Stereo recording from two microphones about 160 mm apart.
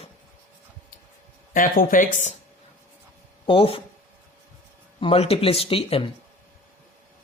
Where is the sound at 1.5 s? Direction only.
60° left (ahead or behind).